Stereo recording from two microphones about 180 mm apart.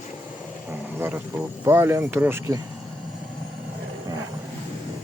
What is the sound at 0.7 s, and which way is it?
Speech, 10° right (ahead or behind).